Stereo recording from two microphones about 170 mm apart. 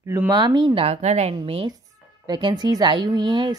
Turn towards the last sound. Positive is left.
turn(degrees=-25)  # may be behind; listen again after turning